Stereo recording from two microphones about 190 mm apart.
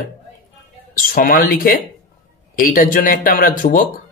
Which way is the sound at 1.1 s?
45° left (ahead or behind).